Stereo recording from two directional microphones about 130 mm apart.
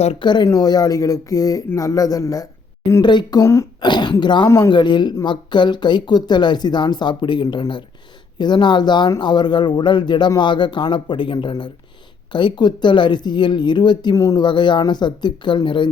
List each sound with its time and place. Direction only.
0.2 s speech: 35° left (ahead or behind)
3.8 s speech: 35° left (ahead or behind)